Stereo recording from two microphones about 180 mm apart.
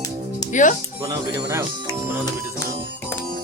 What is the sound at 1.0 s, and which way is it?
Speech, 15° right (ahead or behind).